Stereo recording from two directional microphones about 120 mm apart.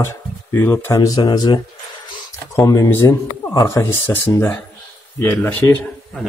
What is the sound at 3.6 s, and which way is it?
Speech, 30° left (ahead or behind).